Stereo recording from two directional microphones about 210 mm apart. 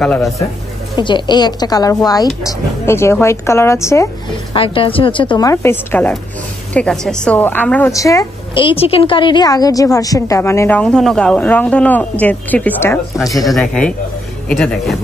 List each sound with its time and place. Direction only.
0.0 s speech: centre (ahead or behind)
0.9 s a woman's voice: 20° left (ahead or behind)
4.6 s a woman's voice: 25° left (ahead or behind)
13.5 s speech: 5° left (ahead or behind)